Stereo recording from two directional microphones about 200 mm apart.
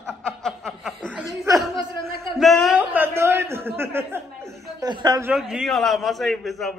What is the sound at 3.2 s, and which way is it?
A man's voice, 10° right (ahead or behind).